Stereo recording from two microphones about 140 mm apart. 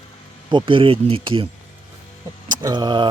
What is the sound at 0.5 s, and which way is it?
Speech, 40° right (ahead or behind).